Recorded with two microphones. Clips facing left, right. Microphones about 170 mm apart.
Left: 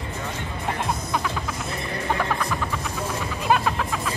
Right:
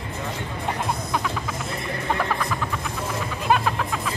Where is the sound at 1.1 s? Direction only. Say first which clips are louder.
Even; centre (ahead or behind).